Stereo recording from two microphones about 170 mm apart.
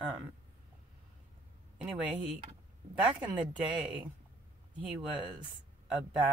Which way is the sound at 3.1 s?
25° right (ahead or behind).